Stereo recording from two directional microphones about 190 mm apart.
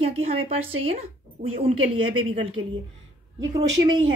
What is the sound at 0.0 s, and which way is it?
Speech, 30° right (ahead or behind).